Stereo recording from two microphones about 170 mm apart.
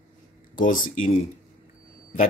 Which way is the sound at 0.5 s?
55° left (ahead or behind).